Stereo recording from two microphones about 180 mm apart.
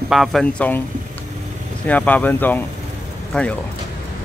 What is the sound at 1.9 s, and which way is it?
Speech, 10° left (ahead or behind).